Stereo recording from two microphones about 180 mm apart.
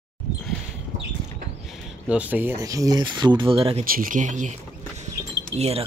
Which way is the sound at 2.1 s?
10° right (ahead or behind).